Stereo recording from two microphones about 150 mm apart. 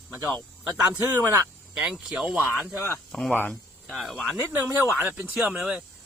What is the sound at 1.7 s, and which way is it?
Speech, 5° right (ahead or behind).